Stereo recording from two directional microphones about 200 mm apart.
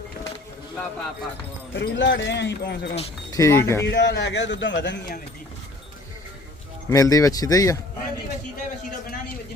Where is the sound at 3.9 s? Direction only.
60° left (ahead or behind).